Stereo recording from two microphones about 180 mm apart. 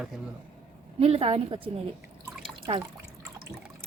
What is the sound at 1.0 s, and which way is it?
Speech, 30° right (ahead or behind).